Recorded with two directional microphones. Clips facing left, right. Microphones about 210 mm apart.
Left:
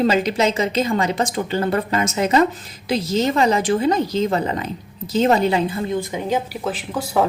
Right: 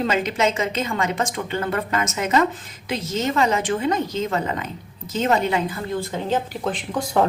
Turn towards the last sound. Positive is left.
turn(degrees=5)  # may be behind; listen again after turning